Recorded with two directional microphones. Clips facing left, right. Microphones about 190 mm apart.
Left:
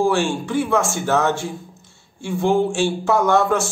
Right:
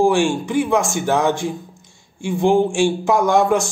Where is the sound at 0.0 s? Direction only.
15° right (ahead or behind).